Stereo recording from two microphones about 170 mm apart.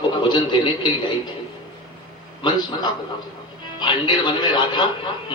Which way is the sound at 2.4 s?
25° left (ahead or behind).